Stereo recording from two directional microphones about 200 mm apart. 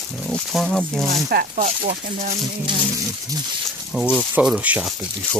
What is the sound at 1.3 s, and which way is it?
Speech, 45° right (ahead or behind).